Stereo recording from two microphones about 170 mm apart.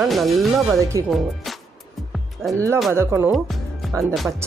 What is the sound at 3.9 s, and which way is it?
Music, 20° right (ahead or behind).